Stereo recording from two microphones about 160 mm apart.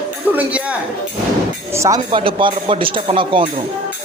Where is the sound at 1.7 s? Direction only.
20° right (ahead or behind).